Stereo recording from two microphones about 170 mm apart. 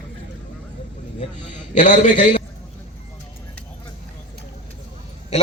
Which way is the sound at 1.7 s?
45° left (ahead or behind).